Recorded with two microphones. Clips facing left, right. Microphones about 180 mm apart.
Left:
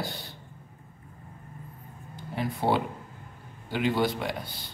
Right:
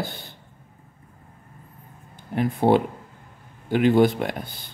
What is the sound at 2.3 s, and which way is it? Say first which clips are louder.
Speech: right 8 dB; 55° right (ahead or behind).